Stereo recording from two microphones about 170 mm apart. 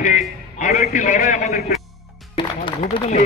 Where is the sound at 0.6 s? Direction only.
50° left (ahead or behind).